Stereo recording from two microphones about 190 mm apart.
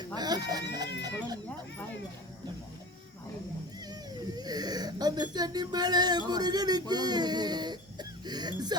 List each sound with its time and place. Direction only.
0.0 s speech: 20° right (ahead or behind)
4.4 s speech: 20° right (ahead or behind)